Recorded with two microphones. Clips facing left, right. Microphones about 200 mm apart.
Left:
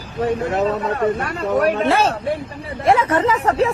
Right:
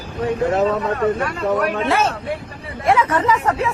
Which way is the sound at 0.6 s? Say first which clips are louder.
Right 1 dB; 35° left (ahead or behind).